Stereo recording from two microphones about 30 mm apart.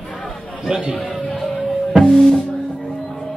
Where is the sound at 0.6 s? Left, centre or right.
Right.